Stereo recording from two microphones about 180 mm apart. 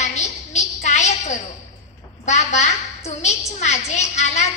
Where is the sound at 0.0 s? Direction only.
40° left (ahead or behind).